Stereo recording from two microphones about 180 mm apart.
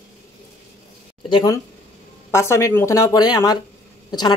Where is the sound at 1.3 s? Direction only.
20° left (ahead or behind).